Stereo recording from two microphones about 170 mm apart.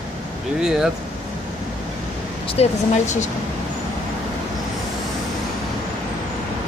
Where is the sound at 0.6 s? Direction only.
5° right (ahead or behind).